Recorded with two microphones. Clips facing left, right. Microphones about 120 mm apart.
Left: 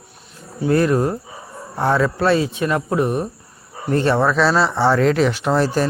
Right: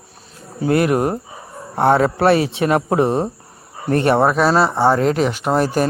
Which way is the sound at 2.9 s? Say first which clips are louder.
Right 3 dB; 25° right (ahead or behind).